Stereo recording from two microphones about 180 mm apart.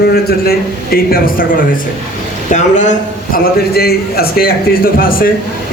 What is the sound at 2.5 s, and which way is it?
A man's voice, 40° left (ahead or behind).